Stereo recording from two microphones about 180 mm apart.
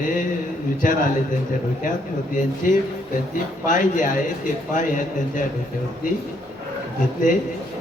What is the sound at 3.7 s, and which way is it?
A man's voice, 45° left (ahead or behind).